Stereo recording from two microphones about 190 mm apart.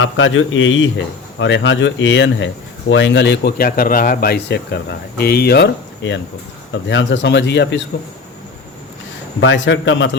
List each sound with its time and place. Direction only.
0.0 s a man's voice: 90° left
1.4 s speech: 70° left (ahead or behind)
9.4 s speech: 75° left (ahead or behind)